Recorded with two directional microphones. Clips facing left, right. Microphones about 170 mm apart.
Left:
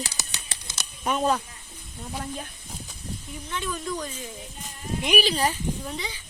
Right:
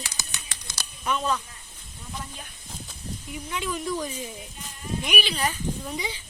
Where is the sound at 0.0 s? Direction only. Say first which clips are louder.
Left 3 dB; 35° left (ahead or behind).